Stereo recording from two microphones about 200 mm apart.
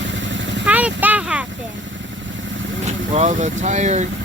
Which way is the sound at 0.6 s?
5° right (ahead or behind).